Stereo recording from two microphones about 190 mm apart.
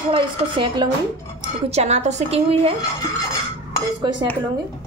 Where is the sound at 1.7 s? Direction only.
35° right (ahead or behind).